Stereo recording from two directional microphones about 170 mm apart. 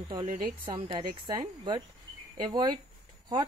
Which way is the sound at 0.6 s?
25° right (ahead or behind).